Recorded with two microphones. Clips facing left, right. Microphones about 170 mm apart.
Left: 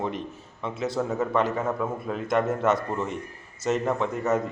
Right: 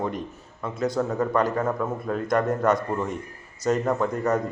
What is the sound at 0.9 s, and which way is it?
A man's voice, 5° left (ahead or behind).